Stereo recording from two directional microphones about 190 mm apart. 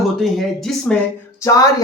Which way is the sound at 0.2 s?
Centre (ahead or behind).